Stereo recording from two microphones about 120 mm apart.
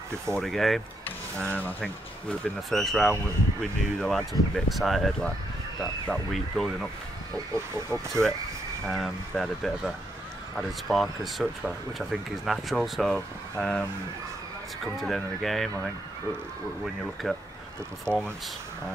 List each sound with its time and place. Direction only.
0.3 s speech: centre (ahead or behind)
1.4 s speech: 10° left (ahead or behind)
7.5 s speech: 25° right (ahead or behind)
8.8 s speech: centre (ahead or behind)
15.0 s speech: centre (ahead or behind)
16.8 s speech: centre (ahead or behind)
18.1 s speech: 20° right (ahead or behind)